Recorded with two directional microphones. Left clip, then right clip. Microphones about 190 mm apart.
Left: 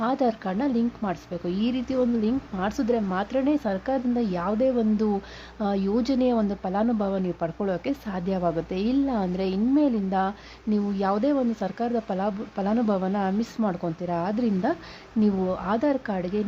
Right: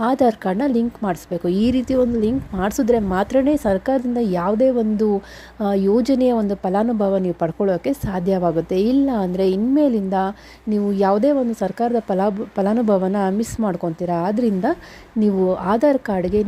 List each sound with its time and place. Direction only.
0.0 s speech: 30° right (ahead or behind)